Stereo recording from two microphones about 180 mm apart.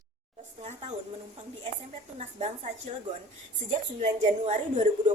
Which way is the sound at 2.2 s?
35° right (ahead or behind).